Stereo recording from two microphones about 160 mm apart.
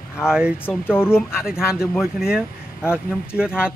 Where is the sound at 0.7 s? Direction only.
15° left (ahead or behind).